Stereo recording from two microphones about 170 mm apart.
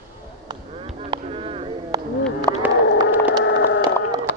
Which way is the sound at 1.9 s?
20° right (ahead or behind).